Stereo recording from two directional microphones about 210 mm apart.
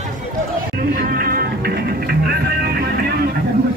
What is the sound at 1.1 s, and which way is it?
Music, 45° right (ahead or behind).